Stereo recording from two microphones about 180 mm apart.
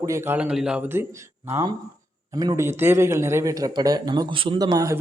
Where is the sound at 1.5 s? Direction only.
20° right (ahead or behind).